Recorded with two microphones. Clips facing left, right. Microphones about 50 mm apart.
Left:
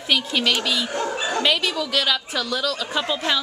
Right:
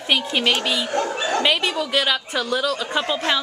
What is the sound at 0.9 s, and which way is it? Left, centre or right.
Speech, right.